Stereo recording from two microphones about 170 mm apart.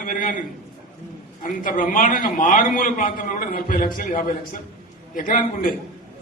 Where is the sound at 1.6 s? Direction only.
50° left (ahead or behind).